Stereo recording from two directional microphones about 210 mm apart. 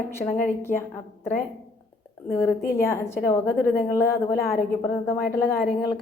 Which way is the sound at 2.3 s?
10° left (ahead or behind).